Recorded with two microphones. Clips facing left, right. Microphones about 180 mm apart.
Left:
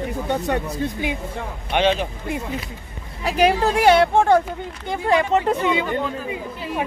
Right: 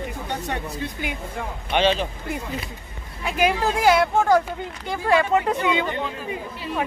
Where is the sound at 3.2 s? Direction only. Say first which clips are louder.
Left 4 dB; 35° left (ahead or behind).